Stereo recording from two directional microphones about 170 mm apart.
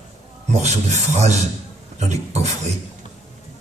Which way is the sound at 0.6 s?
40° right (ahead or behind).